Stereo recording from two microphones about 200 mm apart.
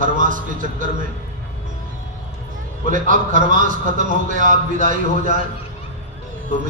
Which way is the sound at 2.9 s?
40° right (ahead or behind).